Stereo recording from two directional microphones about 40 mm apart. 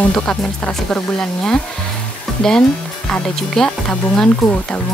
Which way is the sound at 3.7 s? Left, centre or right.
Left.